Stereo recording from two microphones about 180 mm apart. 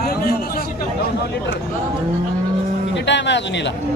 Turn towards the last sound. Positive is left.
turn(degrees=75)  # may be behind; listen again after turning